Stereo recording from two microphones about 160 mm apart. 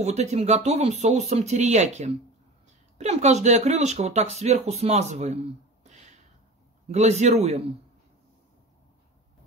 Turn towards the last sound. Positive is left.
turn(degrees=-45)  # may be behind; listen again after turning